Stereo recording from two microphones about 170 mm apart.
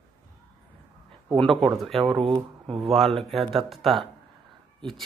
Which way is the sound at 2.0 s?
30° right (ahead or behind).